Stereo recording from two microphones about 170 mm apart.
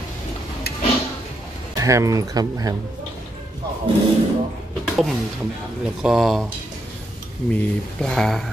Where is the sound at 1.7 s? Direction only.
20° right (ahead or behind).